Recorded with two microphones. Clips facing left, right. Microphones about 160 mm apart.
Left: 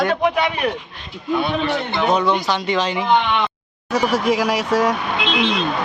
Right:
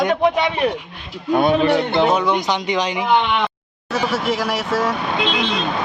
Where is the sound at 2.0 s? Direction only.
10° right (ahead or behind).